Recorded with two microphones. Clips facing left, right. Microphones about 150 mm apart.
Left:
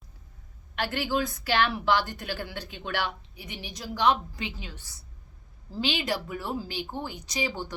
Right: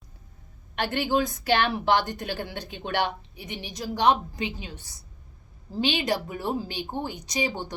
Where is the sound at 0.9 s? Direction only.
25° right (ahead or behind).